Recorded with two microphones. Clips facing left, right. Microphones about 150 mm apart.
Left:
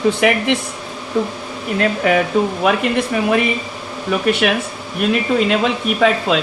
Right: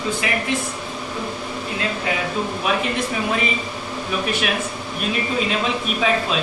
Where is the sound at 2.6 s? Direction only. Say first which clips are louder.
Left 5 dB; 60° left (ahead or behind).